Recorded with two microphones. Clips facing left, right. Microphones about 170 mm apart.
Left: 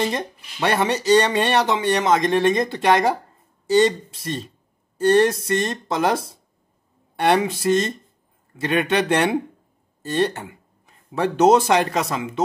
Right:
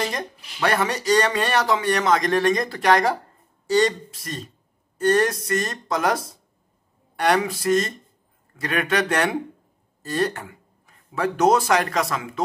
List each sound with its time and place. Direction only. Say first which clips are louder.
0.0 s speech: left 4 dB; 25° left (ahead or behind)